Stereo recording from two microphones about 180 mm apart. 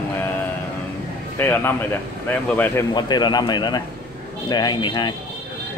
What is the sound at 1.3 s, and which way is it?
Speech, 15° left (ahead or behind).